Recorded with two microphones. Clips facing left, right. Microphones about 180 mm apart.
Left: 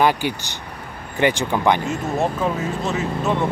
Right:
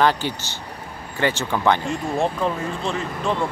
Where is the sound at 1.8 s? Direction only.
5° left (ahead or behind).